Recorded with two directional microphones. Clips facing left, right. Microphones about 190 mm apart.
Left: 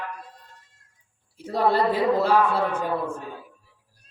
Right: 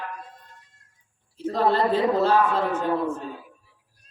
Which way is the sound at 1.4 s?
10° left (ahead or behind).